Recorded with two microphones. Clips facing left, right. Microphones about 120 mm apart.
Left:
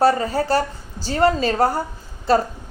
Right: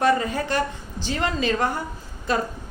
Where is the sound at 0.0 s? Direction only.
35° left (ahead or behind).